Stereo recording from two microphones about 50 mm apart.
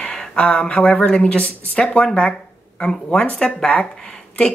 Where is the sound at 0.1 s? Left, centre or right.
Centre.